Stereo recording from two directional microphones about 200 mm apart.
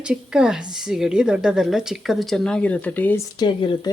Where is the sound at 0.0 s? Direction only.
5° right (ahead or behind).